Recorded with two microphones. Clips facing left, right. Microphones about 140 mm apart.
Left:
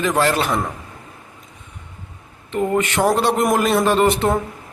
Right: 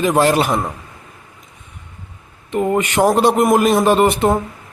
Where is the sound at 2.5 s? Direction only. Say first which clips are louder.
Right 2 dB; 15° right (ahead or behind).